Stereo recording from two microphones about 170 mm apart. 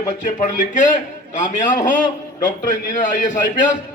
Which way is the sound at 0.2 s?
45° left (ahead or behind).